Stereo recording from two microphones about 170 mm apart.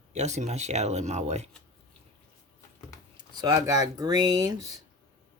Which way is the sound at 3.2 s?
25° right (ahead or behind).